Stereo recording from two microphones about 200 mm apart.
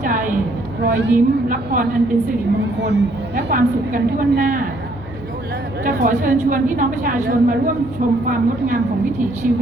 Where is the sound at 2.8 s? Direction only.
60° right (ahead or behind).